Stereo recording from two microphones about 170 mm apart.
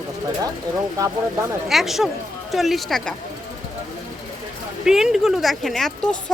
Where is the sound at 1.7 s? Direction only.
Centre (ahead or behind).